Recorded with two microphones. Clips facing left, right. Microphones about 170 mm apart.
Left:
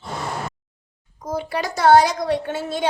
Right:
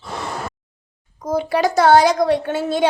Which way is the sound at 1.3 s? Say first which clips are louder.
Right 8 dB; 90° right.